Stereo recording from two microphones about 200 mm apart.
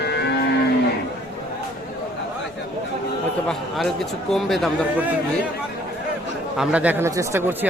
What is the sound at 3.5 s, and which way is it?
A man's voice, centre (ahead or behind).